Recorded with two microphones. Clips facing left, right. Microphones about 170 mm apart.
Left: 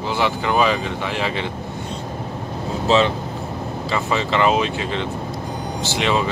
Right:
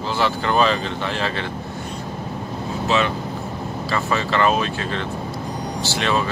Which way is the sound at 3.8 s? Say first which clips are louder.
Left 1 dB; 20° left (ahead or behind).